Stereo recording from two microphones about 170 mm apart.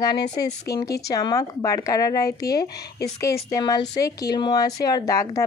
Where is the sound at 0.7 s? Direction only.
65° left (ahead or behind).